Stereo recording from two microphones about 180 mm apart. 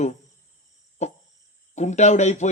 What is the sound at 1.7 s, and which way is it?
Speech, 40° left (ahead or behind).